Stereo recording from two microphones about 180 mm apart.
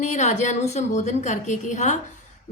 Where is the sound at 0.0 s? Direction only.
40° left (ahead or behind).